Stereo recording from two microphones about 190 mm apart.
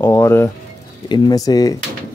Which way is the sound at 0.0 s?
15° left (ahead or behind).